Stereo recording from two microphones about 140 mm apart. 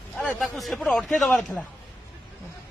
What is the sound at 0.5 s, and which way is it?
Speech, centre (ahead or behind).